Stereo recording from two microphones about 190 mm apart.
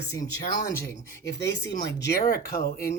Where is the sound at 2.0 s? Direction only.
55° left (ahead or behind).